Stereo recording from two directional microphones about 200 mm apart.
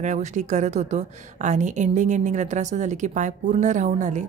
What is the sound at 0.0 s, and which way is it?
A woman's voice, 35° right (ahead or behind).